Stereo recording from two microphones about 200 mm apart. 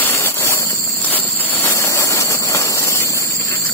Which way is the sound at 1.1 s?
10° left (ahead or behind).